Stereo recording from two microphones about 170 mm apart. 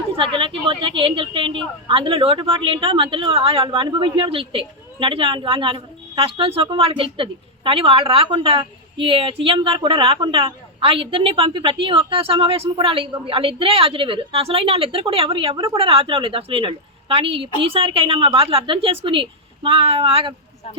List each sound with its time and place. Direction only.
0.2 s a woman's voice: 30° right (ahead or behind)